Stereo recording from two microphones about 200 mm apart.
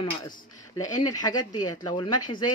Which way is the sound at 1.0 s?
20° left (ahead or behind).